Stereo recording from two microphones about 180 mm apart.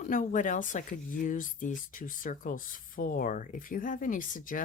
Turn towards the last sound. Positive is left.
turn(degrees=50)  # may be behind; listen again after turning